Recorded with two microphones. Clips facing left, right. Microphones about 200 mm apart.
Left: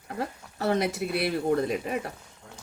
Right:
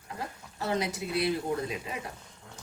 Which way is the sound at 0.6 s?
60° left (ahead or behind).